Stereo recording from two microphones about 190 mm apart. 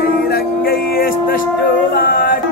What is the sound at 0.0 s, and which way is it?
Music, 50° left (ahead or behind).